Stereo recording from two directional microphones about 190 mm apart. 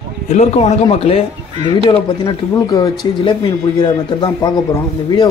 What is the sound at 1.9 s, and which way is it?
Speech, 20° left (ahead or behind).